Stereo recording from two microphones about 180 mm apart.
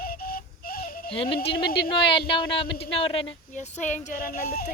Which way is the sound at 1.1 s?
30° left (ahead or behind).